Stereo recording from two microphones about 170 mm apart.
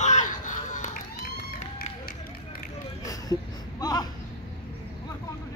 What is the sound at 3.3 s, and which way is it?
Wail, 25° left (ahead or behind).